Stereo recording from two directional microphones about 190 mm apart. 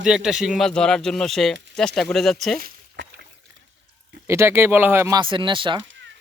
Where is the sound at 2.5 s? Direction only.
50° right (ahead or behind).